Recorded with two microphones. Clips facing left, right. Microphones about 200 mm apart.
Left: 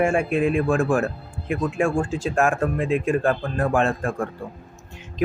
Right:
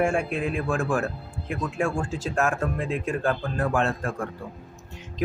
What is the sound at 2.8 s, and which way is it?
Speech, 10° left (ahead or behind).